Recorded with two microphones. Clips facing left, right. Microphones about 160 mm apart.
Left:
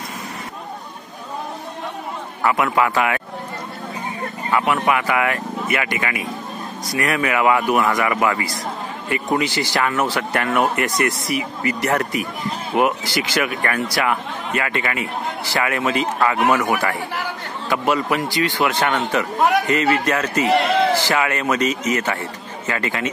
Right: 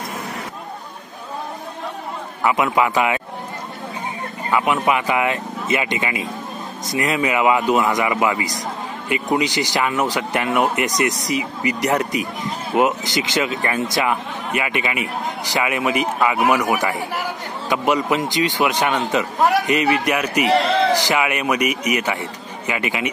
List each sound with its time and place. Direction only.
2.4 s speech: 20° right (ahead or behind)
4.5 s speech: 15° right (ahead or behind)